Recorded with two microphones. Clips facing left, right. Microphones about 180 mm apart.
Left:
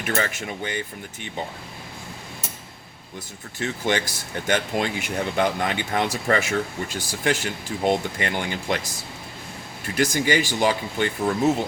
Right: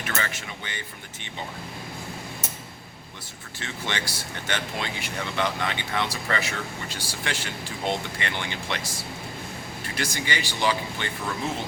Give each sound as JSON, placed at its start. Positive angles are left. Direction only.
{"t": 0.1, "sound": "speech", "side_deg": 40}
{"t": 3.6, "sound": "speech", "side_deg": 45}
{"t": 9.9, "sound": "speech", "side_deg": 45}